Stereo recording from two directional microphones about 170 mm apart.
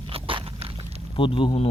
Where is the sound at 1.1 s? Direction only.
30° left (ahead or behind).